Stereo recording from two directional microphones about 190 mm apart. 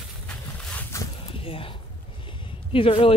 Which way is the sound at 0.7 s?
10° left (ahead or behind).